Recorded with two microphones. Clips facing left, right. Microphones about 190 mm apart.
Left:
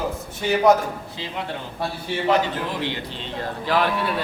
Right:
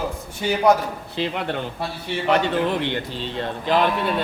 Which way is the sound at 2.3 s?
60° right (ahead or behind).